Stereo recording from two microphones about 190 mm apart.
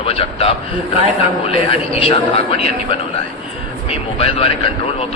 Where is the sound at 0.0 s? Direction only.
30° left (ahead or behind).